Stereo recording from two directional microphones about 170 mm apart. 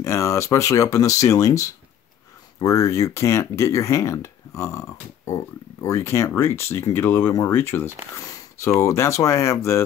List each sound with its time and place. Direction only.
0.0 s speech: 15° left (ahead or behind)